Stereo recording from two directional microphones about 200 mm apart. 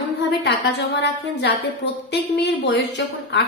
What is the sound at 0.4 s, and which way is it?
A woman's voice, 60° left (ahead or behind).